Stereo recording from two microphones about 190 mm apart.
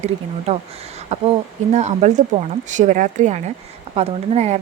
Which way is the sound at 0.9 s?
30° right (ahead or behind).